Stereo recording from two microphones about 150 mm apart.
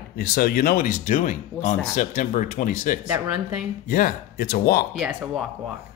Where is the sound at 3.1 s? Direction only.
5° right (ahead or behind).